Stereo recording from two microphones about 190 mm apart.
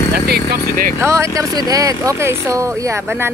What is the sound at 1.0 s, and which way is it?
Speech, 15° right (ahead or behind).